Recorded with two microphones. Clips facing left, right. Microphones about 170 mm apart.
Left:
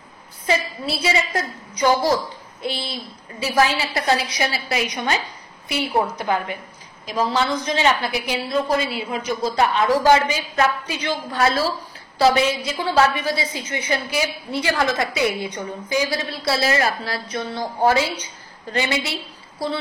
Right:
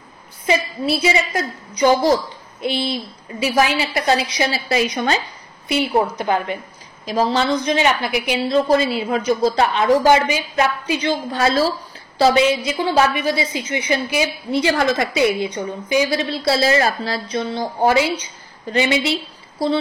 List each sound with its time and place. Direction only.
0.5 s a woman's voice: 15° right (ahead or behind)
7.7 s a woman's voice: 15° right (ahead or behind)